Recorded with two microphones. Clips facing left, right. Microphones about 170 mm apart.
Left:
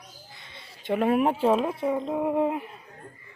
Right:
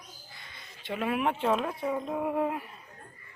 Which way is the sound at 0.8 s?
50° left (ahead or behind).